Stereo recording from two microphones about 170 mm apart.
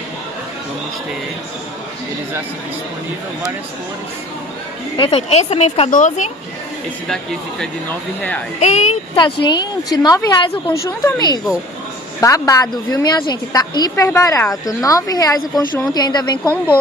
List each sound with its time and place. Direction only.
4.9 s speech: 30° left (ahead or behind)
5.9 s a woman's voice: 45° left (ahead or behind)
8.5 s speech: 40° left (ahead or behind)
9.1 s a woman's voice: 25° left (ahead or behind)